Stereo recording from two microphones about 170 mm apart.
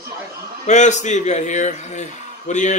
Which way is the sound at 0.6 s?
45° left (ahead or behind).